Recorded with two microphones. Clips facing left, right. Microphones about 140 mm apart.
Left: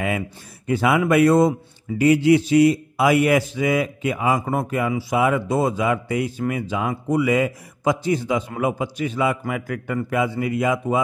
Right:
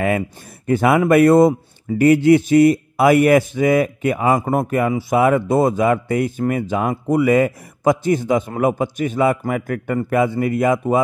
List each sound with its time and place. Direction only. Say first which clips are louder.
0.7 s speech: right 4 dB; 55° right (ahead or behind)